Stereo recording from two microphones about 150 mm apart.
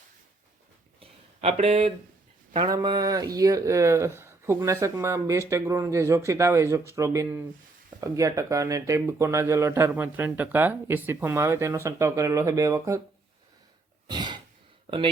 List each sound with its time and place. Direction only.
0.9 s a sound: 45° right (ahead or behind)
2.6 s speech: 25° right (ahead or behind)
14.1 s cough: 30° right (ahead or behind)
14.8 s speech: 35° right (ahead or behind)